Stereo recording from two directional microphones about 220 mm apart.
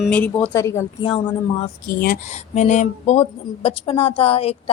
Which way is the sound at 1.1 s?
25° left (ahead or behind).